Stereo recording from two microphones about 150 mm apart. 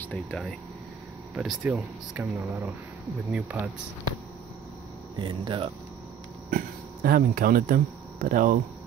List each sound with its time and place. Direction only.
0.0 s speech: 10° left (ahead or behind)
1.3 s speech: 5° right (ahead or behind)
5.1 s speech: 30° right (ahead or behind)
6.5 s speech: 75° right (ahead or behind)